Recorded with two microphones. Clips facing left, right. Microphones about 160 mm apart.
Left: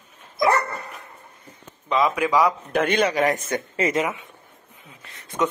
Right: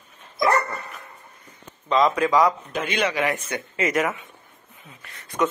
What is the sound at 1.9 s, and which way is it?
Speech, 10° left (ahead or behind).